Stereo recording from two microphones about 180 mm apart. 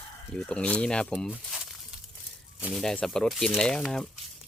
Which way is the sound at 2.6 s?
Centre (ahead or behind).